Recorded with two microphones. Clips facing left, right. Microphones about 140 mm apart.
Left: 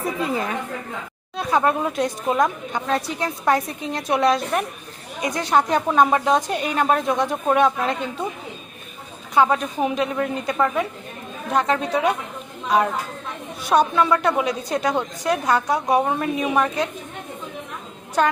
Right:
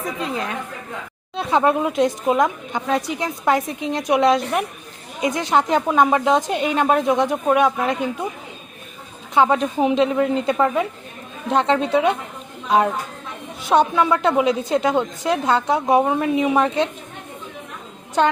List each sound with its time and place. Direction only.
0.2 s a woman's voice: 5° left (ahead or behind)
1.4 s a woman's voice: 25° right (ahead or behind)
9.3 s a woman's voice: 20° right (ahead or behind)
13.6 s a woman's voice: 20° right (ahead or behind)
18.2 s a woman's voice: 20° right (ahead or behind)